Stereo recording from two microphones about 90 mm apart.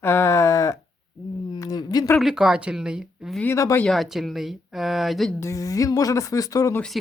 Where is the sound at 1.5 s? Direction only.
45° left (ahead or behind).